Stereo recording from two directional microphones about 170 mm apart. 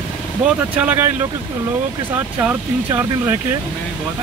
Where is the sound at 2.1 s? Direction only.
10° right (ahead or behind).